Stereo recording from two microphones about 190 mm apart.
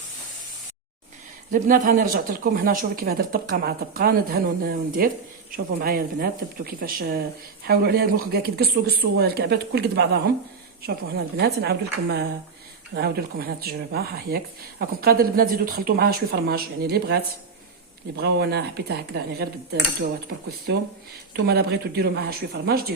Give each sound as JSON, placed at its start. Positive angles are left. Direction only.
{"t": 1.5, "sound": "speech", "side_deg": -45}
{"t": 12.9, "sound": "speech", "side_deg": -55}
{"t": 18.2, "sound": "speech", "side_deg": -60}
{"t": 20.7, "sound": "speech", "side_deg": -60}